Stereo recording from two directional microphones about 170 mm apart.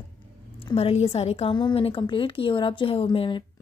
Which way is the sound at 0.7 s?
35° left (ahead or behind).